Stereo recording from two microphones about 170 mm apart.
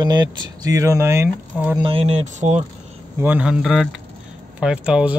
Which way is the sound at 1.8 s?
35° right (ahead or behind).